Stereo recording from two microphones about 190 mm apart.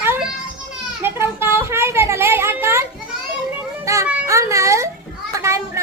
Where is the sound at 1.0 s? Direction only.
10° right (ahead or behind).